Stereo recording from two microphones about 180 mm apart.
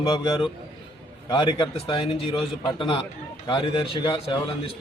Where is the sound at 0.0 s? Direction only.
25° left (ahead or behind).